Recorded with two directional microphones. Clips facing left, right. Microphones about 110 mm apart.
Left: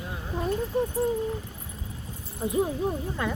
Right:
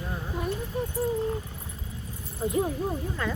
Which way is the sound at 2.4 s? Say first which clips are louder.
Left 1 dB; 20° left (ahead or behind).